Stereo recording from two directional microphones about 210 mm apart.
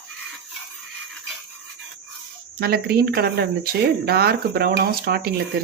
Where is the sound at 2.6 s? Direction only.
45° right (ahead or behind).